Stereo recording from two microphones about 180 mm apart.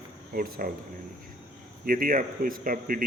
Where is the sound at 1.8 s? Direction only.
50° right (ahead or behind).